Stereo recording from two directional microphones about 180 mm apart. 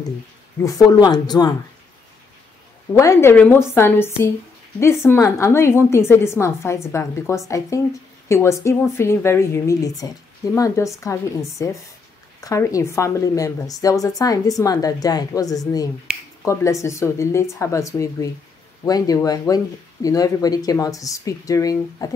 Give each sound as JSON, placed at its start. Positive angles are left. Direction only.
{"t": 0.6, "sound": "a woman's voice", "side_deg": 20}
{"t": 2.9, "sound": "a woman's voice", "side_deg": 15}